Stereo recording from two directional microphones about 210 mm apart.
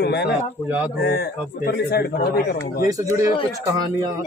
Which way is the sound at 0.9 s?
50° left (ahead or behind).